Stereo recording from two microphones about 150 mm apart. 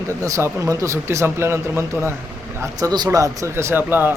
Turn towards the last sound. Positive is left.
turn(degrees=-15)  # may be behind; listen again after turning